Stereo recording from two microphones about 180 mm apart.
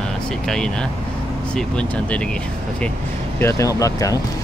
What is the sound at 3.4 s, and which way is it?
Speech, 15° left (ahead or behind).